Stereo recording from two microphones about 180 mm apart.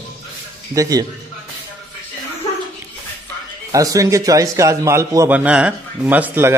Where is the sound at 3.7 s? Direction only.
20° right (ahead or behind).